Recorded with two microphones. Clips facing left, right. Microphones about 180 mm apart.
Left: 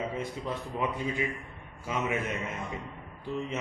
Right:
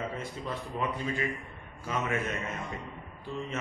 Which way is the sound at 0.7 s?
15° left (ahead or behind).